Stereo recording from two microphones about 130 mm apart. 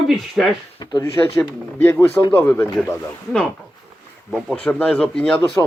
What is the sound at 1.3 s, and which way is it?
Speech, 15° left (ahead or behind).